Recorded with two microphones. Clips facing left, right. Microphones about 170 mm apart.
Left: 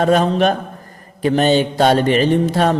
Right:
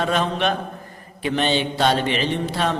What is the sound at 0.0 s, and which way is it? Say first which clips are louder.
A man's voice: left 7 dB; 40° left (ahead or behind).